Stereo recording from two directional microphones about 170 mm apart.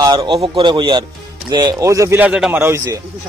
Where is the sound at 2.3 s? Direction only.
5° right (ahead or behind).